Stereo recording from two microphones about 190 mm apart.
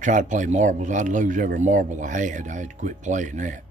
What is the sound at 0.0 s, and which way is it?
Speech, 40° right (ahead or behind).